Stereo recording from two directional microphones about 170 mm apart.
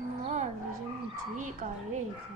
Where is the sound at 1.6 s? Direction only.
45° right (ahead or behind).